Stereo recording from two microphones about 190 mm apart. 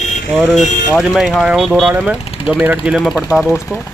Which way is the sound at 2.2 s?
30° left (ahead or behind).